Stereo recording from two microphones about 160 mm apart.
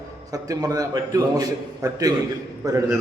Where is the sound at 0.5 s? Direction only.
20° right (ahead or behind).